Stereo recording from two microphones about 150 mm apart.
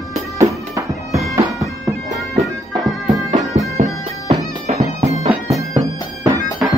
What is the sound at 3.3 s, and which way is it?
Music, 50° right (ahead or behind).